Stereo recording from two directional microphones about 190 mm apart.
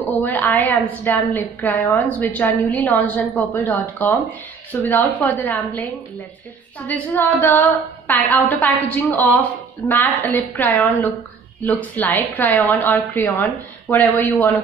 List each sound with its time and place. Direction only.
0.2 s a woman's voice: 10° left (ahead or behind)